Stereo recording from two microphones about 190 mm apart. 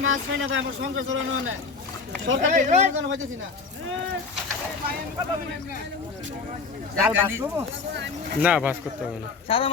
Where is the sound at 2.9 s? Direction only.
90° right.